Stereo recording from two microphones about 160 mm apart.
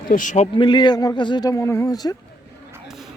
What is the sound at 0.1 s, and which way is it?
Speech, 55° left (ahead or behind).